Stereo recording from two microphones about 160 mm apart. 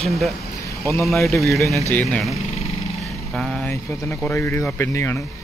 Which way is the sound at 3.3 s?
5° left (ahead or behind).